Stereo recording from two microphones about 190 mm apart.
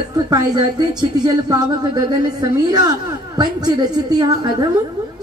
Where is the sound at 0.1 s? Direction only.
20° right (ahead or behind).